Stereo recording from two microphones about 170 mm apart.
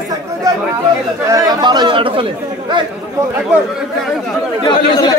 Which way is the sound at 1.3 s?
25° right (ahead or behind).